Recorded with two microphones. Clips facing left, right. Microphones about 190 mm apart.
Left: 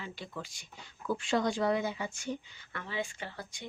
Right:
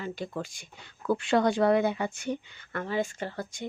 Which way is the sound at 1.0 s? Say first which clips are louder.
Right 6 dB; 65° right (ahead or behind).